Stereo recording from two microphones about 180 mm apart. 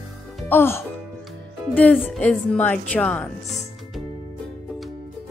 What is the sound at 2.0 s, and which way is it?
Speech, 10° left (ahead or behind).